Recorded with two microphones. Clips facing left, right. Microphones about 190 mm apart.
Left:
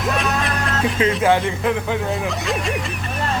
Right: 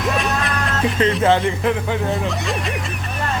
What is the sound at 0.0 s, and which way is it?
Music, centre (ahead or behind).